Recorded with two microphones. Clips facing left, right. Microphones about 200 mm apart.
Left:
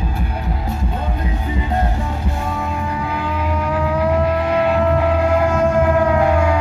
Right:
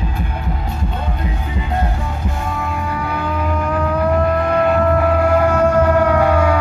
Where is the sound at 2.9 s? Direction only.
15° left (ahead or behind).